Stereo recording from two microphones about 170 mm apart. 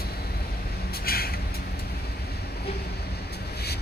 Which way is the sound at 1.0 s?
65° left (ahead or behind).